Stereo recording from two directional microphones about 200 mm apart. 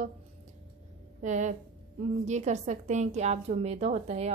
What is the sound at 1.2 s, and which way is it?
A woman's voice, 35° right (ahead or behind).